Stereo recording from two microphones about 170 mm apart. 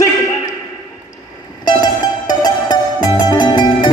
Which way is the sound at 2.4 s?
25° left (ahead or behind).